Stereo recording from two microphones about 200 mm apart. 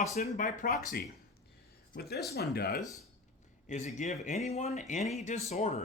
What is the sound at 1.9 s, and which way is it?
Speech, 50° left (ahead or behind).